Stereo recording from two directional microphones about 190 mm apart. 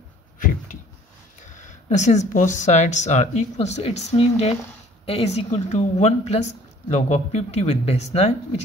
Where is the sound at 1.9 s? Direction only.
40° left (ahead or behind).